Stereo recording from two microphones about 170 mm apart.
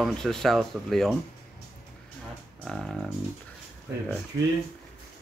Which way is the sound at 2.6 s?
Centre (ahead or behind).